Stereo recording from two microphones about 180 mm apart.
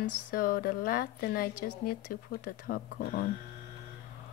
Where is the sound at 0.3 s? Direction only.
55° left (ahead or behind).